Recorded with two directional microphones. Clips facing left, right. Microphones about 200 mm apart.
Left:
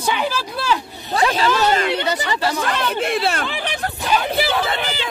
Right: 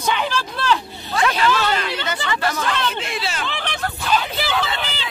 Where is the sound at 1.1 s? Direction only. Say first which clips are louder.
Left 1 dB; 30° left (ahead or behind).